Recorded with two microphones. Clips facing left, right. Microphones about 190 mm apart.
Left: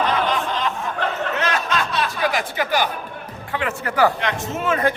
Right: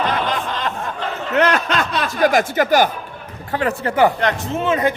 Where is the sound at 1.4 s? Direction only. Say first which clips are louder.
Right 9 dB; 60° right (ahead or behind); by 2.9 s 45° right (ahead or behind).